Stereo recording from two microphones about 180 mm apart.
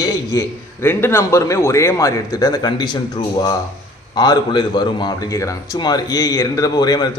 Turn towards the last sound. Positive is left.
turn(degrees=20)  # may be behind; listen again after turning